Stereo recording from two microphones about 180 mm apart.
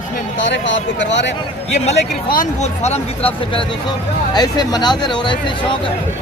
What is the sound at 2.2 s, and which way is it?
Speech, 45° left (ahead or behind).